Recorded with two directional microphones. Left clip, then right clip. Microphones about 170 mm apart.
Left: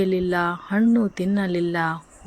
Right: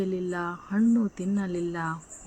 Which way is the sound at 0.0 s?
40° left (ahead or behind).